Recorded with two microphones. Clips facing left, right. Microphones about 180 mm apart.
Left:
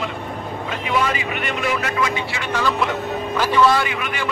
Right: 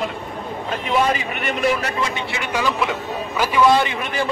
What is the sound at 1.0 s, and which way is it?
Speech, 40° right (ahead or behind).